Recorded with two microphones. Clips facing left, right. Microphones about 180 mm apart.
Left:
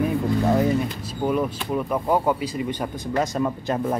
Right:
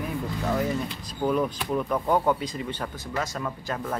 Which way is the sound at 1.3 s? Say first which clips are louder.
Left 1 dB; 5° left (ahead or behind).